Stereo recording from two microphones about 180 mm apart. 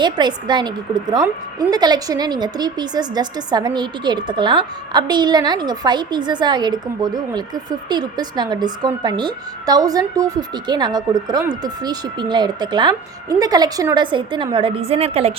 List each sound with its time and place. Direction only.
0.0 s a woman's voice: 25° right (ahead or behind)
1.7 s a woman's voice: 20° right (ahead or behind)